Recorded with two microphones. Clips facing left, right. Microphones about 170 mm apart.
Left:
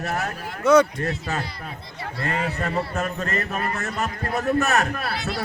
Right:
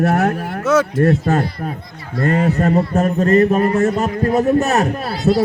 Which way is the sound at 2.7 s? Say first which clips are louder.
Right 10 dB; 30° right (ahead or behind).